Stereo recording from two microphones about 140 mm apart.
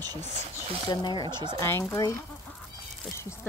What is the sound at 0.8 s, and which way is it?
Speech, 35° left (ahead or behind).